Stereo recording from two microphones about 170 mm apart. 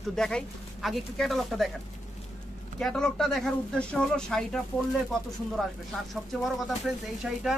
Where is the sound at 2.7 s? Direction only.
5° left (ahead or behind).